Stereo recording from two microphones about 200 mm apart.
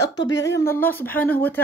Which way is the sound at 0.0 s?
65° left (ahead or behind).